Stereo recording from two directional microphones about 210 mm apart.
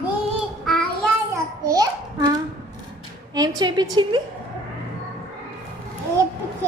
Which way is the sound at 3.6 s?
20° right (ahead or behind).